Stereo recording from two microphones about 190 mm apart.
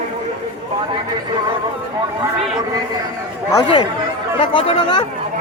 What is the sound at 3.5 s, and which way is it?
Speech, 20° left (ahead or behind).